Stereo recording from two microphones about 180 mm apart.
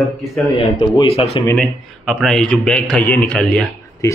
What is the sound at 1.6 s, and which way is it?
A man's voice, centre (ahead or behind).